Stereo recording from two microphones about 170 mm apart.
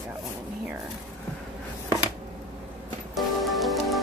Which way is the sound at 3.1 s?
Centre (ahead or behind).